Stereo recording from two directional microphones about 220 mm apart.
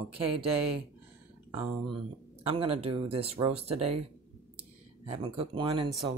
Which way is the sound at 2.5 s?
25° right (ahead or behind).